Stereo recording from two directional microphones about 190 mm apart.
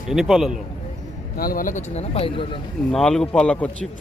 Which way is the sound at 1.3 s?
50° left (ahead or behind).